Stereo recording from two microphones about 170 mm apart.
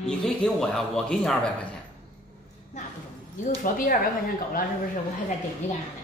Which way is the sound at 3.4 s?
50° left (ahead or behind).